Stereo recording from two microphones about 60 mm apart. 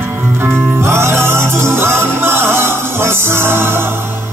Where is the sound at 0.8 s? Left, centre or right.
Right.